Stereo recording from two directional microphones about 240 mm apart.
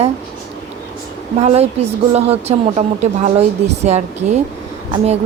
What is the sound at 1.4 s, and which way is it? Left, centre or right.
A woman's voice, right.